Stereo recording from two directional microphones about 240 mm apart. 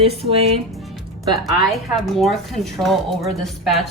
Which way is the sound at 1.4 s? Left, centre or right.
Centre.